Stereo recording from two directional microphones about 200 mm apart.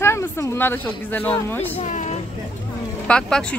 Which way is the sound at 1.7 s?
35° left (ahead or behind).